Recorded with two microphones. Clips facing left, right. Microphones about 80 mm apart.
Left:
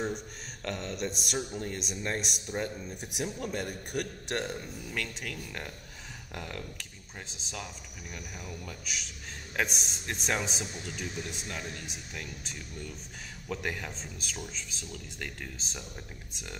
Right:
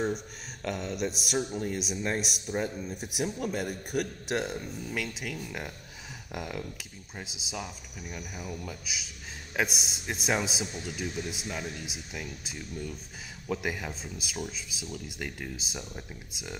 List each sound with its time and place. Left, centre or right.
0.0 s a man's voice: centre